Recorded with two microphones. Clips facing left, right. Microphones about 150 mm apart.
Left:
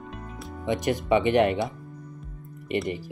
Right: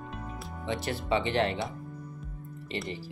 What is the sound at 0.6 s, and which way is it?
Speech, 15° left (ahead or behind).